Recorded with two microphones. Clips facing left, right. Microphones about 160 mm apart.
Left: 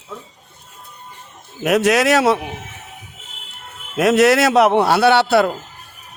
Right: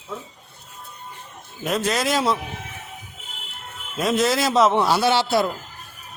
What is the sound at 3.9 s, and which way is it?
A man's voice, 75° left (ahead or behind).